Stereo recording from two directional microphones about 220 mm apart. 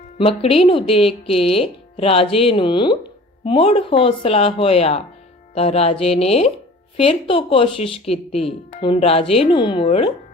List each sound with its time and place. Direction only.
0.2 s speech: 25° left (ahead or behind)